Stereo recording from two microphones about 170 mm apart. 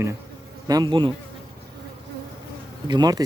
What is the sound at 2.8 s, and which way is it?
Speech, 25° right (ahead or behind).